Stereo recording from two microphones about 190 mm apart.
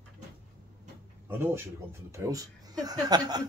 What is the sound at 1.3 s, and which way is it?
Speech, 10° right (ahead or behind).